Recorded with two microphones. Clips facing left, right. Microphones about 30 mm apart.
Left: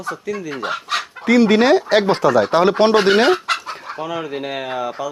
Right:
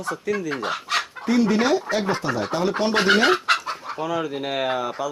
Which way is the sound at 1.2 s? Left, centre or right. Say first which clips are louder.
Left 7 dB; left.